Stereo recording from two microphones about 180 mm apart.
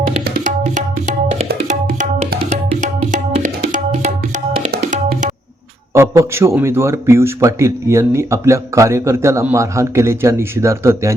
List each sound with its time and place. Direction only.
0.3 s tabla: 45° right (ahead or behind)
2.5 s music: 45° right (ahead or behind)
3.3 s tabla: 45° right (ahead or behind)
5.9 s a man's voice: 15° right (ahead or behind)